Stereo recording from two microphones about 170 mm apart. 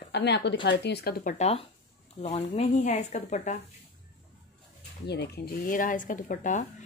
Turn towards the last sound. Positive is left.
turn(degrees=50)  # may be behind; listen again after turning